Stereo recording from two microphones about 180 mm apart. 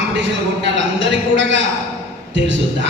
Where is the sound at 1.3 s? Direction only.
90° right.